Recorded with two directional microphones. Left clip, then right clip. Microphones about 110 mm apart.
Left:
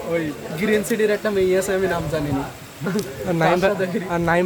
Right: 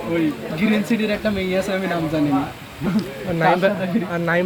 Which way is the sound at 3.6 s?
40° left (ahead or behind).